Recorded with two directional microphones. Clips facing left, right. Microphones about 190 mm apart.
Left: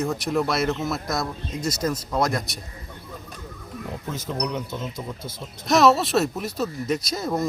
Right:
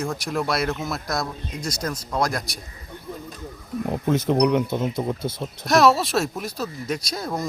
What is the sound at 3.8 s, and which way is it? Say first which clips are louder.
Speech: right 10 dB; 60° right (ahead or behind).